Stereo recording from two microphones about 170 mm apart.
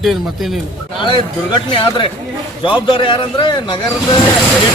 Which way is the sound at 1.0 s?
30° left (ahead or behind).